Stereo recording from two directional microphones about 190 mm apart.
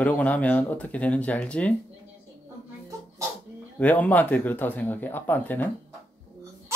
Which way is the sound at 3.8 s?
10° left (ahead or behind).